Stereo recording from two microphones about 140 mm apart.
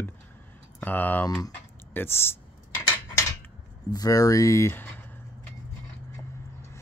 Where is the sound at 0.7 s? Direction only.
10° left (ahead or behind).